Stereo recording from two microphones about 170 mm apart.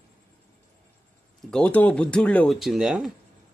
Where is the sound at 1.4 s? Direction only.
5° left (ahead or behind).